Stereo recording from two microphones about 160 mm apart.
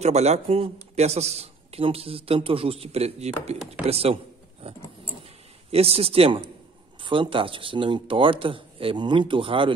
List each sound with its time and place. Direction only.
0.0 s a man's voice: 45° right (ahead or behind)